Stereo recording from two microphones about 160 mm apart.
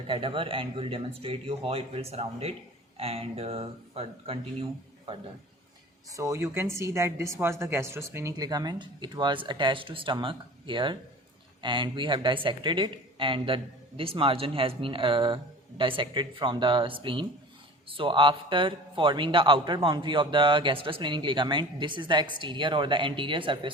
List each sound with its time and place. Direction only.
0.1 s a man's voice: 35° right (ahead or behind)
6.1 s a man's voice: 20° right (ahead or behind)